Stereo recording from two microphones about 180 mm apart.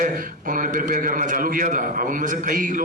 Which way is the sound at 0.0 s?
50° right (ahead or behind).